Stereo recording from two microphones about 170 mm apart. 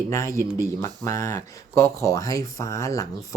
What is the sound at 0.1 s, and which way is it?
Speech, 15° left (ahead or behind).